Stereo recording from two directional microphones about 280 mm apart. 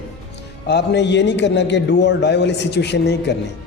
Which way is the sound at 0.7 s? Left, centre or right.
Left.